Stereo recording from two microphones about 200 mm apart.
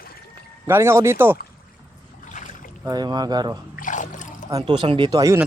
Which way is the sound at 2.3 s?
40° left (ahead or behind).